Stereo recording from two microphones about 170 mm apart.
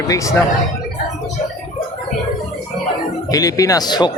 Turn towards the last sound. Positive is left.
turn(degrees=25)  # may be behind; listen again after turning